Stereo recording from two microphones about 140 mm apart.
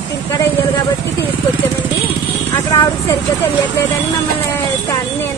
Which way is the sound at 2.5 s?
25° left (ahead or behind).